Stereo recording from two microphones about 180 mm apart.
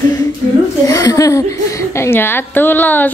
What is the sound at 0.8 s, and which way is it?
A woman's voice, 20° left (ahead or behind).